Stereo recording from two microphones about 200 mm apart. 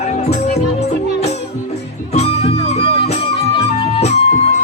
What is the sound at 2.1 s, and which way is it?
Music, 30° left (ahead or behind).